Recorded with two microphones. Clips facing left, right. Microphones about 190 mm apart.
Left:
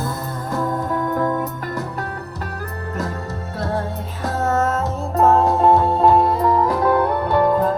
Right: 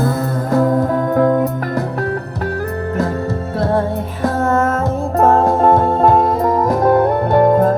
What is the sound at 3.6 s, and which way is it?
Music, 55° right (ahead or behind).